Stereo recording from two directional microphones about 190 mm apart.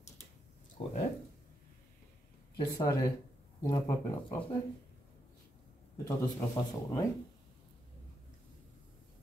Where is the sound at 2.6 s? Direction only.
20° left (ahead or behind).